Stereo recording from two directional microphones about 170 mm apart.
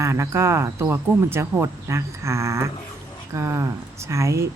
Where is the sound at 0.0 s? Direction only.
15° right (ahead or behind).